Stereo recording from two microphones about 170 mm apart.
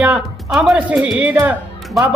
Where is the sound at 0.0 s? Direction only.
5° right (ahead or behind).